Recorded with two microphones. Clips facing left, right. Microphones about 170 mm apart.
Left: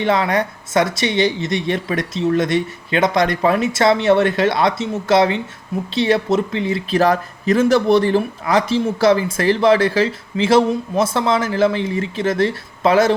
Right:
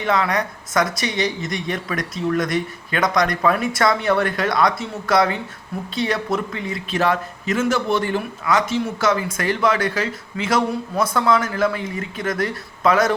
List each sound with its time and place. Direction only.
0.0 s speech: 30° left (ahead or behind)